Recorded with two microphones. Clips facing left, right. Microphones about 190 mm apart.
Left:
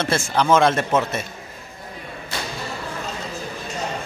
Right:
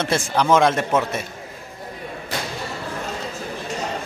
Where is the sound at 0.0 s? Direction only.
15° right (ahead or behind).